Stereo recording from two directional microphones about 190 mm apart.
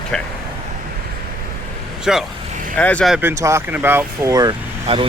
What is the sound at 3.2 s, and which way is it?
Speech, 15° right (ahead or behind).